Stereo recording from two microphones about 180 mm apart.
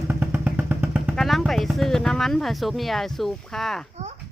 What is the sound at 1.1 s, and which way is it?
Speech, centre (ahead or behind).